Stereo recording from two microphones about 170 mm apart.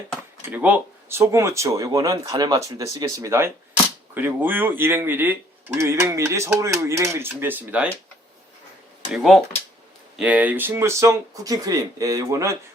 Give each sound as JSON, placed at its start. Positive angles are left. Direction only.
{"t": 0.5, "sound": "speech", "side_deg": -10}
{"t": 9.1, "sound": "speech", "side_deg": 0}